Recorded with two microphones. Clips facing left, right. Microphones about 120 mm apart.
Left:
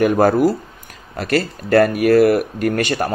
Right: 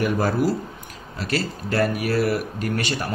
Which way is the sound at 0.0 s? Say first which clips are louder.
Left 8 dB; 50° left (ahead or behind).